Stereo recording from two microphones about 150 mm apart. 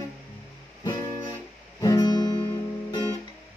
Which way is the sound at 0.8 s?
25° left (ahead or behind).